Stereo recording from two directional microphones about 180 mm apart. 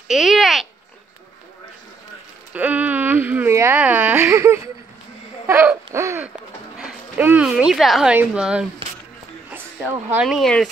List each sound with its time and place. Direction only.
0.1 s speech: centre (ahead or behind)
2.5 s a sound: 10° right (ahead or behind)
5.5 s hoot: 10° right (ahead or behind)
6.8 s speech: 10° right (ahead or behind)
9.5 s a sound: 10° right (ahead or behind)
10.2 s speech: centre (ahead or behind)